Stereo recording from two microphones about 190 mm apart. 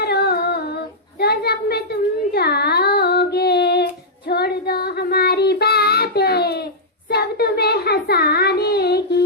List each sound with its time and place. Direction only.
0.0 s humming: 60° left (ahead or behind)
1.2 s a sound: 55° left (ahead or behind)
4.3 s child singing: 55° left (ahead or behind)